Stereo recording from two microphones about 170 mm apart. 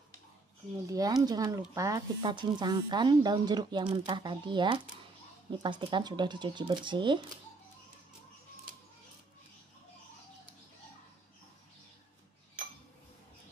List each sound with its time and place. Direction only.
0.8 s speech: 20° right (ahead or behind)